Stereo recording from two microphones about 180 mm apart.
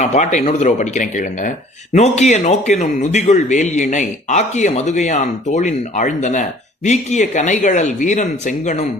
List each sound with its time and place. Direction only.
0.0 s speech: 40° left (ahead or behind)